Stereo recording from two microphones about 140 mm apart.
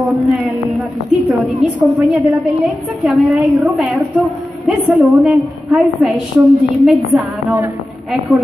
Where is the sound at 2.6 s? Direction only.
Centre (ahead or behind).